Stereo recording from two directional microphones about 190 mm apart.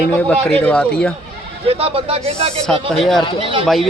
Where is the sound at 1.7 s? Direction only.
30° right (ahead or behind).